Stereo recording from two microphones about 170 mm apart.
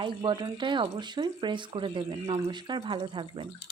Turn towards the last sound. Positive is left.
turn(degrees=-30)  # may be behind; listen again after turning